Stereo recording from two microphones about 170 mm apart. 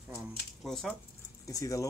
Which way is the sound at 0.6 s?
5° left (ahead or behind).